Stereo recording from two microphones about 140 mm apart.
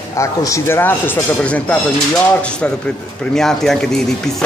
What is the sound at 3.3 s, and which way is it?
Speech, 5° left (ahead or behind).